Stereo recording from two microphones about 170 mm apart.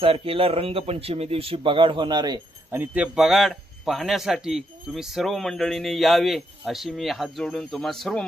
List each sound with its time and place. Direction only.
0.0 s speech: 35° right (ahead or behind)
2.6 s speech: 10° right (ahead or behind)